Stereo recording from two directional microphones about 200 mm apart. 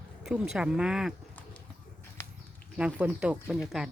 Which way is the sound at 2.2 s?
15° left (ahead or behind).